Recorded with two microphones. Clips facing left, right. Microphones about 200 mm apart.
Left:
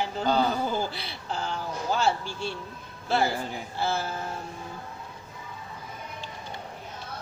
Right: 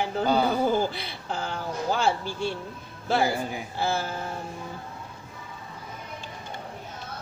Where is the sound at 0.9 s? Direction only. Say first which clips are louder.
Right 1 dB; 55° right (ahead or behind).